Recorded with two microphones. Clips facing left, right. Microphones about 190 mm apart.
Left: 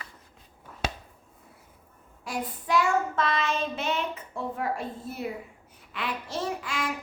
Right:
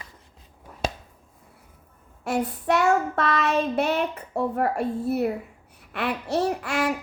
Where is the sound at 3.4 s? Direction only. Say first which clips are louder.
Right 6 dB; 65° right (ahead or behind).